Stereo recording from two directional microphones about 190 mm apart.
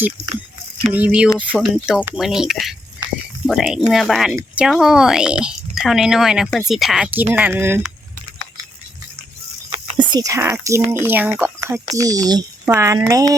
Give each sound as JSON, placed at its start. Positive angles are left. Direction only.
{"t": 0.9, "sound": "speech", "side_deg": -5}
{"t": 9.6, "sound": "a sound", "side_deg": -30}
{"t": 10.1, "sound": "speech", "side_deg": -20}